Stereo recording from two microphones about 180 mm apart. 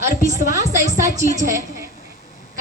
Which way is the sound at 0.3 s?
20° right (ahead or behind).